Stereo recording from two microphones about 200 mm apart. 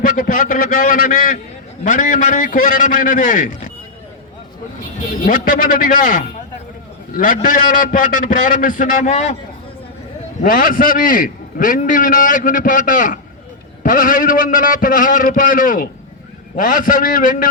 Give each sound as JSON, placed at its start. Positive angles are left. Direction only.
{"t": 0.0, "sound": "a man's voice", "side_deg": 40}
{"t": 5.2, "sound": "a man's voice", "side_deg": 45}
{"t": 10.4, "sound": "a man's voice", "side_deg": 45}